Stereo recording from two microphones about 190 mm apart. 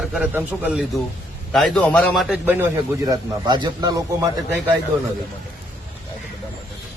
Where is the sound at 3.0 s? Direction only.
25° right (ahead or behind).